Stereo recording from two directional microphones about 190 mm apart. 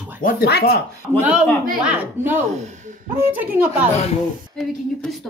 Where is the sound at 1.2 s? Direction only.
5° right (ahead or behind).